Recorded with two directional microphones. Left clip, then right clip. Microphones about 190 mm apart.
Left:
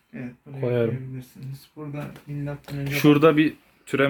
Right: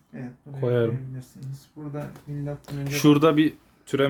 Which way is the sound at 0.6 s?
25° right (ahead or behind).